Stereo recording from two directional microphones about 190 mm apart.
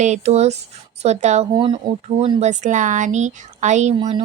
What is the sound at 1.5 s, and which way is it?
Speech, 20° right (ahead or behind).